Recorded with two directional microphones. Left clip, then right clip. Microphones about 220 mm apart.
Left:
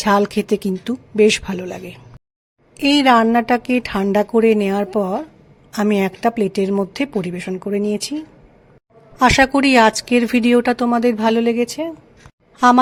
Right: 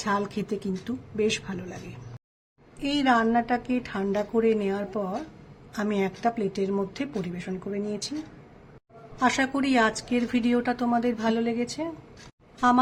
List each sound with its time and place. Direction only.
0.0 s a woman's voice: 40° left (ahead or behind)
9.1 s speech: 45° left (ahead or behind)